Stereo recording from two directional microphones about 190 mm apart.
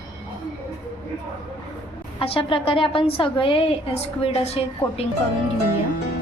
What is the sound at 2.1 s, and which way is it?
A woman's voice, 30° left (ahead or behind).